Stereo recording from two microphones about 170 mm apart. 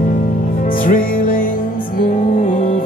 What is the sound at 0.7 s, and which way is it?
Music, 55° left (ahead or behind).